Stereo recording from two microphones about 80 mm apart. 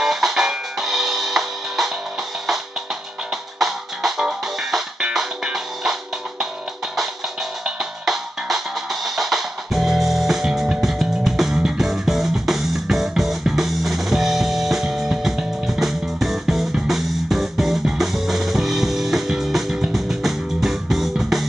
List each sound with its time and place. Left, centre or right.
0.0 s music: centre
3.5 s music: centre
7.6 s music: centre